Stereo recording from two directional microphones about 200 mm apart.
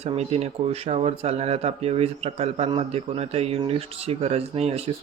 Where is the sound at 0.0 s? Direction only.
30° right (ahead or behind).